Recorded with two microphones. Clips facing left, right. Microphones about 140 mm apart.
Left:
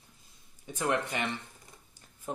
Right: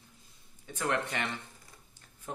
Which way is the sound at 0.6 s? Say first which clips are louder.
Left 2 dB; 20° left (ahead or behind).